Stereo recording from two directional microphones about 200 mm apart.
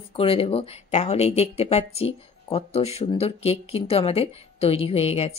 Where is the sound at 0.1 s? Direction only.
30° left (ahead or behind).